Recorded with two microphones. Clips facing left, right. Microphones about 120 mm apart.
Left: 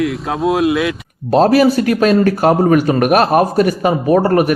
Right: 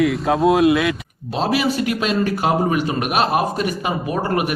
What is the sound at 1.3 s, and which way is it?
A man's voice, 45° left (ahead or behind).